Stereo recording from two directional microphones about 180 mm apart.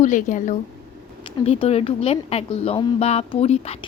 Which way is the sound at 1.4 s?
35° left (ahead or behind).